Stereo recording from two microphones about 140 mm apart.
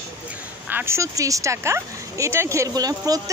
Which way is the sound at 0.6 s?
15° right (ahead or behind).